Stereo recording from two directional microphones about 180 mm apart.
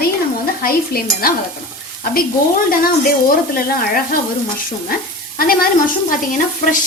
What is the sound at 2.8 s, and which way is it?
A woman's voice, 55° left (ahead or behind).